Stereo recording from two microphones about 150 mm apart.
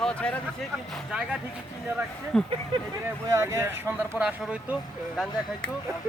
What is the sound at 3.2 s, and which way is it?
Speech, 20° right (ahead or behind).